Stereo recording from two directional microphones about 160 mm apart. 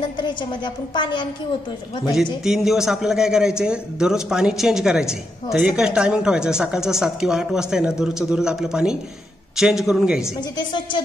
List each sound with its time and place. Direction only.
0.0 s a woman's voice: 30° left (ahead or behind)
2.4 s a man's voice: centre (ahead or behind)
10.2 s a woman's voice: 25° left (ahead or behind)